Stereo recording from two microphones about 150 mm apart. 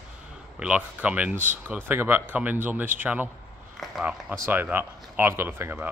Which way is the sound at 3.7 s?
Centre (ahead or behind).